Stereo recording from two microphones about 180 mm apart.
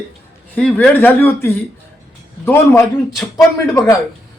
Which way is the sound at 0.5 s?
5° left (ahead or behind).